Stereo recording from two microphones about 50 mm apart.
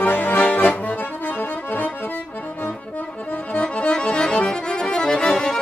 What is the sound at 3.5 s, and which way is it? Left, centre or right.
Accordion, left.